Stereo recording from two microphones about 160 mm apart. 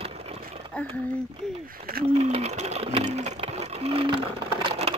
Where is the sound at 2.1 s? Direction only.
40° right (ahead or behind).